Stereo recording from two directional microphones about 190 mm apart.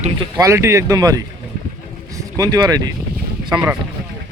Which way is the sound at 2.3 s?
20° right (ahead or behind).